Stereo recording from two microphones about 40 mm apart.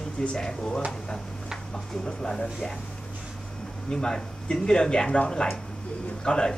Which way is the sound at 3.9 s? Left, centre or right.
Centre.